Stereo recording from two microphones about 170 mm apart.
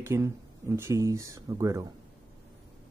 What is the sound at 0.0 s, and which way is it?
Speech, 15° right (ahead or behind).